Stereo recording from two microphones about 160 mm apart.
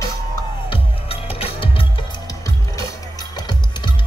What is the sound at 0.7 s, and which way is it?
Music, 35° left (ahead or behind).